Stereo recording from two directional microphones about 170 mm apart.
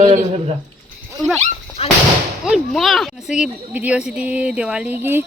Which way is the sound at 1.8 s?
35° left (ahead or behind).